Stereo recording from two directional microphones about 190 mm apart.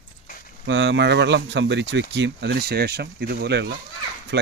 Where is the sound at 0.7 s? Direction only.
75° right (ahead or behind).